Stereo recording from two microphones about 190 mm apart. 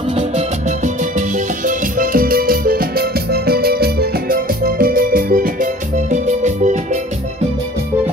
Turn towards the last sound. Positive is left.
turn(degrees=-40)  # may be behind; listen again after turning